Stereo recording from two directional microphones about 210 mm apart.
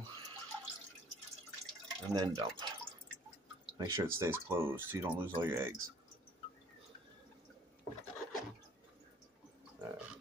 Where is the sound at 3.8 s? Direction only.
15° right (ahead or behind).